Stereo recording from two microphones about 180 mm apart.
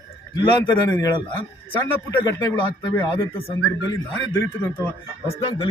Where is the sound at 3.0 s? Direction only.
30° left (ahead or behind).